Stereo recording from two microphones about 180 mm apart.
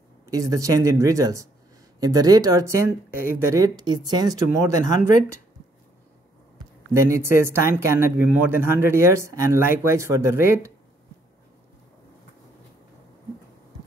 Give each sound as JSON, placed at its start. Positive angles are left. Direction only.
{"t": 0.3, "sound": "speech", "side_deg": -20}
{"t": 6.9, "sound": "speech", "side_deg": -15}